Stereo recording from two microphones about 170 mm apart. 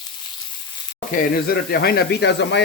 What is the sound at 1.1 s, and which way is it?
Speech, 60° left (ahead or behind).